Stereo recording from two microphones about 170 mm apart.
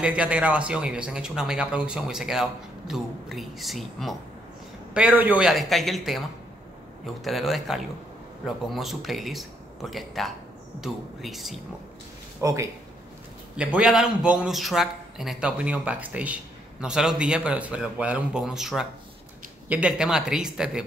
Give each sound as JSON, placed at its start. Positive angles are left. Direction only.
{"t": 0.0, "sound": "speech", "side_deg": -5}
{"t": 7.2, "sound": "speech", "side_deg": 0}
{"t": 12.4, "sound": "speech", "side_deg": -15}
{"t": 13.7, "sound": "a man's voice", "side_deg": -5}